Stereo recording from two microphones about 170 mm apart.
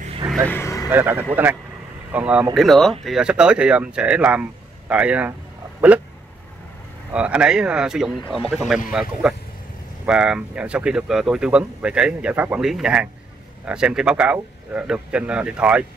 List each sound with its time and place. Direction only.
0.5 s speech: 15° left (ahead or behind)
0.8 s speech: 10° right (ahead or behind)
7.1 s speech: 5° right (ahead or behind)
10.0 s speech: 5° right (ahead or behind)